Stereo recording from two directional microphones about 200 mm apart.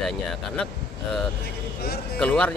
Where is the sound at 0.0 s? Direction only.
Centre (ahead or behind).